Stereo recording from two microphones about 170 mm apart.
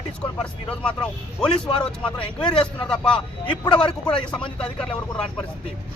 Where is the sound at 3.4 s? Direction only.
30° left (ahead or behind).